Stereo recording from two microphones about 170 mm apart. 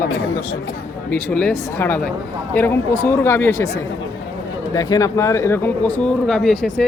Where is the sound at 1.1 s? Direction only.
5° left (ahead or behind).